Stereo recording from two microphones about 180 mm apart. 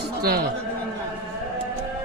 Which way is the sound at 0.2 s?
60° right (ahead or behind).